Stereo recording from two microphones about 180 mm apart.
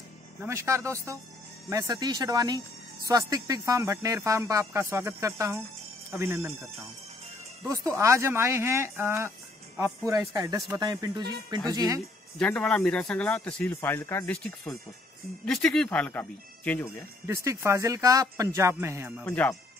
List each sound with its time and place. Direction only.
0.4 s speech: 15° right (ahead or behind)
7.6 s speech: 15° right (ahead or behind)
12.4 s speech: 5° left (ahead or behind)
17.3 s speech: 15° right (ahead or behind)
19.2 s speech: 10° left (ahead or behind)